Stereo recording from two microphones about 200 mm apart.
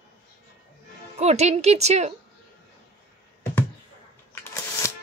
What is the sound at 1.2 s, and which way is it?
Speech, 30° right (ahead or behind).